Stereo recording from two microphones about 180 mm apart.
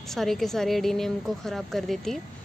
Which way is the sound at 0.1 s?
Centre (ahead or behind).